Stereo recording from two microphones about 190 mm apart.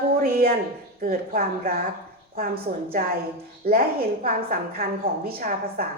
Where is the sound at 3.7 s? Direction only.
50° right (ahead or behind).